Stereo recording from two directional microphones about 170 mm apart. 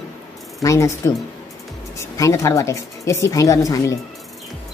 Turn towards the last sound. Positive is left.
turn(degrees=20)  # may be behind; listen again after turning